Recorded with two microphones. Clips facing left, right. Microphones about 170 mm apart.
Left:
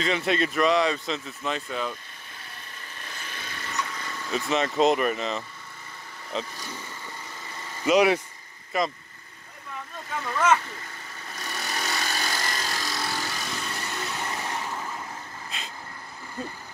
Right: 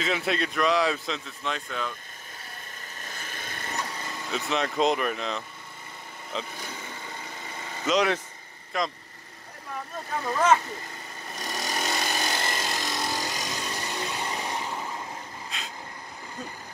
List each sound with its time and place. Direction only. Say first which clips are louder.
0.0 s speech: left 3 dB; centre (ahead or behind)
3.0 s vehicle: even; 45° right (ahead or behind)
3.8 s vehicle: right 1 dB; 30° right (ahead or behind)
4.3 s speech: left 3 dB; centre (ahead or behind)
7.8 s speech: left 4 dB; 10° left (ahead or behind)
10.1 s speech: right 1 dB; 30° right (ahead or behind)
11.3 s a sound: right 2 dB; 20° right (ahead or behind)
15.5 s vehicle: even; centre (ahead or behind)